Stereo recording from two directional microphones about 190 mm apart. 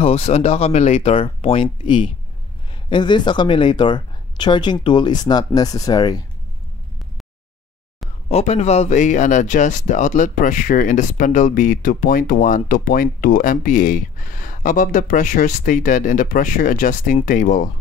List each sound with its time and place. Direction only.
0.0 s speech: 35° left (ahead or behind)
8.3 s speech: 35° left (ahead or behind)